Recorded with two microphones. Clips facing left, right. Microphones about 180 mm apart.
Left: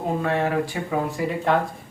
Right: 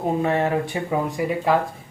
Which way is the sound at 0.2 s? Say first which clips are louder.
Right 2 dB; 20° right (ahead or behind).